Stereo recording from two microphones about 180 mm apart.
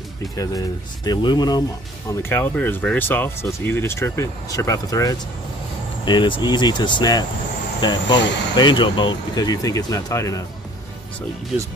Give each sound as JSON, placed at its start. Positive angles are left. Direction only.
{"t": 0.4, "sound": "speech", "side_deg": 20}
{"t": 2.0, "sound": "speech", "side_deg": 15}